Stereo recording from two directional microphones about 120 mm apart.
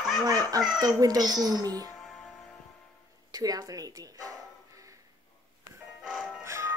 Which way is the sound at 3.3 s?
30° right (ahead or behind).